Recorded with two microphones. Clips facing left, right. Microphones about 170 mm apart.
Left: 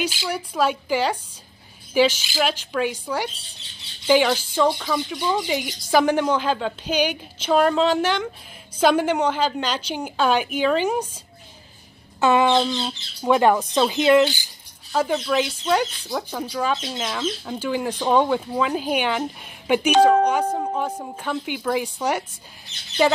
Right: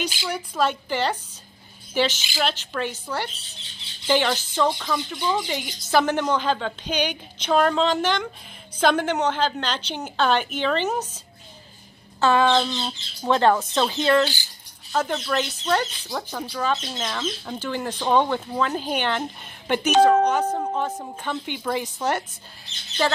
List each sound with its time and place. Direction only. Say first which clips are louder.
0.0 s speech: left 2 dB; 5° left (ahead or behind)
12.2 s speech: left 1 dB; 20° left (ahead or behind)
14.9 s speech: left 3 dB; 5° left (ahead or behind)